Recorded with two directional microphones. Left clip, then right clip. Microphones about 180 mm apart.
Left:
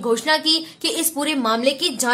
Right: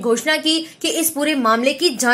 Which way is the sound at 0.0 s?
15° right (ahead or behind).